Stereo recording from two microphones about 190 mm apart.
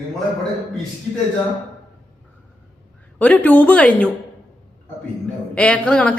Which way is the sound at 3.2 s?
5° left (ahead or behind).